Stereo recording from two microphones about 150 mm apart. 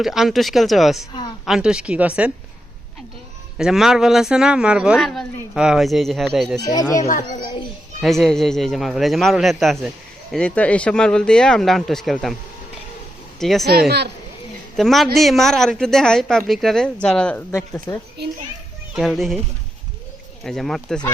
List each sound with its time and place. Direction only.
0.0 s a woman's voice: centre (ahead or behind)
3.6 s speech: 5° right (ahead or behind)
6.7 s a child's voice: 25° left (ahead or behind)
8.0 s speech: centre (ahead or behind)
13.4 s speech: centre (ahead or behind)
13.7 s speech: 90° right
14.8 s speech: centre (ahead or behind)
18.9 s speech: centre (ahead or behind)
20.4 s speech: centre (ahead or behind)